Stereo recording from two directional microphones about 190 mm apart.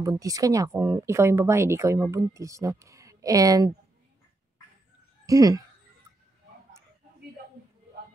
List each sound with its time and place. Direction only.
0.0 s speech: 20° right (ahead or behind)
5.2 s speech: 20° right (ahead or behind)